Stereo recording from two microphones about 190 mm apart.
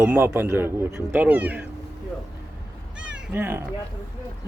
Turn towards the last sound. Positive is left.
turn(degrees=-10)  # may be behind; listen again after turning